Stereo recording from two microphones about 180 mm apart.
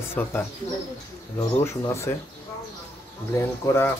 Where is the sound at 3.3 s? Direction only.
15° left (ahead or behind).